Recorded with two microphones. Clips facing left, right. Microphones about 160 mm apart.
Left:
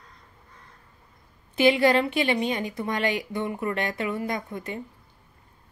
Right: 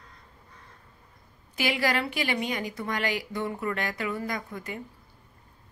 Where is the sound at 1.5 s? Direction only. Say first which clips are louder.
Left 8 dB; 25° left (ahead or behind).